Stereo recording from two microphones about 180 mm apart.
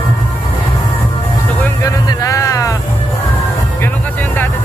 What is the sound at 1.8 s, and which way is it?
Music, 20° left (ahead or behind).